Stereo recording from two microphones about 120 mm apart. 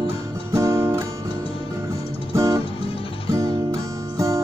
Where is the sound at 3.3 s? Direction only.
25° right (ahead or behind).